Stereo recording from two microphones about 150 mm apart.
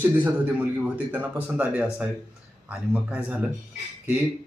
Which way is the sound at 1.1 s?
10° right (ahead or behind).